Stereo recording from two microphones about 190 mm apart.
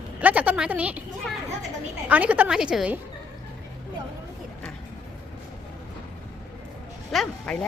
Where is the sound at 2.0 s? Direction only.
10° right (ahead or behind).